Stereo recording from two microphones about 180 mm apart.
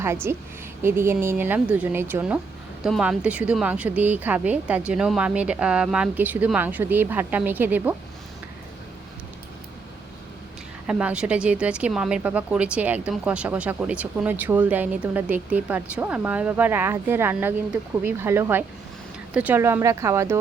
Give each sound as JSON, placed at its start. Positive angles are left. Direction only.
{"t": 0.0, "sound": "speech", "side_deg": -15}
{"t": 10.8, "sound": "speech", "side_deg": -5}